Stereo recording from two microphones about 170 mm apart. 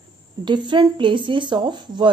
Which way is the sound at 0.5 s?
25° right (ahead or behind).